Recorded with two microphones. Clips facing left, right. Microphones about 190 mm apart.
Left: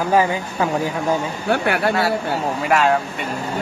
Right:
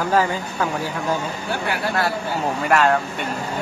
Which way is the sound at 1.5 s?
60° left (ahead or behind).